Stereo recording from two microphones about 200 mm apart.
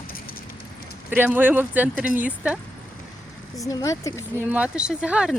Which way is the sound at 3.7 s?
15° left (ahead or behind).